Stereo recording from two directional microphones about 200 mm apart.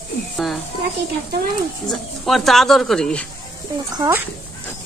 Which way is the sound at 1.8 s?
Centre (ahead or behind).